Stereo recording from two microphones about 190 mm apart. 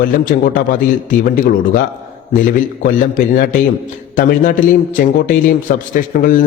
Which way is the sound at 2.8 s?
45° left (ahead or behind).